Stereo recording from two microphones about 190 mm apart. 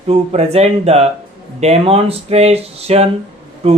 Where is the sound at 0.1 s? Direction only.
35° right (ahead or behind).